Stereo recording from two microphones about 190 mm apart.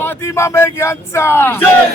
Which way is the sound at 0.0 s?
15° left (ahead or behind).